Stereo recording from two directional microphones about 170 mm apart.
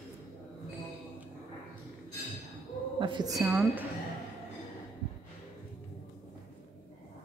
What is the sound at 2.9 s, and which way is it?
Speech, 25° right (ahead or behind).